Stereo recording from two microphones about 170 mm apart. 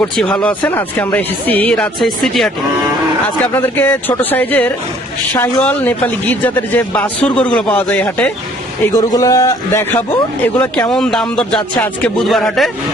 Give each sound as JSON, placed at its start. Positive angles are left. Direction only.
{"t": 0.0, "sound": "speech", "side_deg": 5}
{"t": 3.5, "sound": "speech", "side_deg": 15}
{"t": 8.9, "sound": "a man's voice", "side_deg": 20}
{"t": 10.9, "sound": "speech", "side_deg": 5}